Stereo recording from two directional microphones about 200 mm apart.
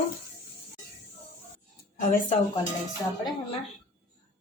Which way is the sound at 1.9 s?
40° left (ahead or behind).